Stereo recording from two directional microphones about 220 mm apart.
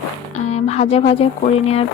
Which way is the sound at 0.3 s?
30° left (ahead or behind).